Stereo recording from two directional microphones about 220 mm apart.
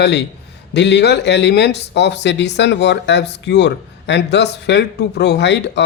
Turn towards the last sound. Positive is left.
turn(degrees=50)  # may be behind; listen again after turning